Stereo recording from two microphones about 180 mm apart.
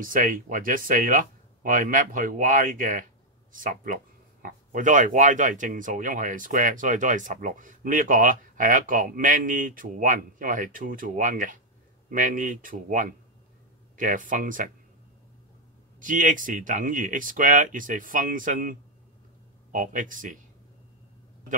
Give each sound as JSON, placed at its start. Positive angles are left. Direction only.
{"t": 0.0, "sound": "speech", "side_deg": -50}
{"t": 16.0, "sound": "speech", "side_deg": -45}